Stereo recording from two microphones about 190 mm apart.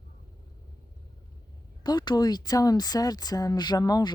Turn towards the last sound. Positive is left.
turn(degrees=20)  # may be behind; listen again after turning